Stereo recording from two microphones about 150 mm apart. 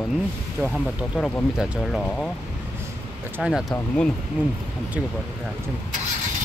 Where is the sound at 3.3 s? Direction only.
5° right (ahead or behind).